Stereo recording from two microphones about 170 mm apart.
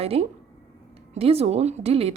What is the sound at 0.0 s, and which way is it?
A woman's voice, 35° right (ahead or behind).